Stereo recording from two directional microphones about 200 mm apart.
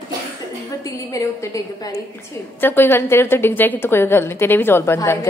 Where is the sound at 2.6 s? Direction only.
10° left (ahead or behind).